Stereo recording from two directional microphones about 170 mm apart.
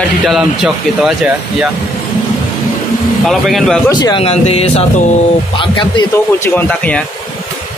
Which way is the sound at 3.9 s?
25° left (ahead or behind).